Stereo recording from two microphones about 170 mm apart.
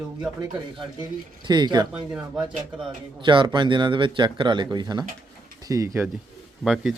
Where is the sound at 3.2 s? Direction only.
30° right (ahead or behind).